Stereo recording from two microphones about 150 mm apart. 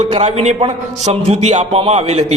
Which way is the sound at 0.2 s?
45° right (ahead or behind).